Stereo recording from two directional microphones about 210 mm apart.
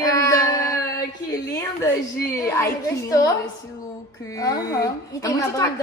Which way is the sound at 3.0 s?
15° left (ahead or behind).